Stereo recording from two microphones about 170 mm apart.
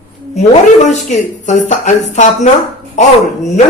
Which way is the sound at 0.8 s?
45° left (ahead or behind).